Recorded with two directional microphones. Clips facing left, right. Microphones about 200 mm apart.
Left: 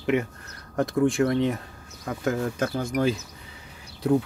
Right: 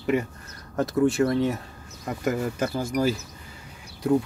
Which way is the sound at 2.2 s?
5° right (ahead or behind).